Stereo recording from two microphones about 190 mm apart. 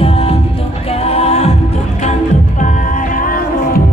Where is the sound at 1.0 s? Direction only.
35° left (ahead or behind).